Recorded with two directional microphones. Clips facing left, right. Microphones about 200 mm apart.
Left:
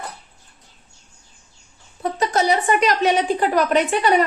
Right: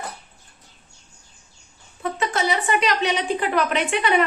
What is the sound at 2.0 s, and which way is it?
A woman's voice, 40° left (ahead or behind).